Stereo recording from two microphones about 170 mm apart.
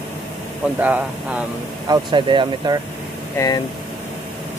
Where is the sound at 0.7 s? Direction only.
10° right (ahead or behind).